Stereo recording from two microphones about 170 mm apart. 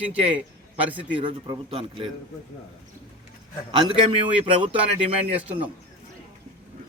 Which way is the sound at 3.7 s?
30° right (ahead or behind).